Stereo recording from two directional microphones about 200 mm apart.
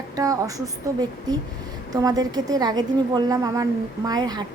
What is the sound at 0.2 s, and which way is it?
A woman's voice, 15° right (ahead or behind).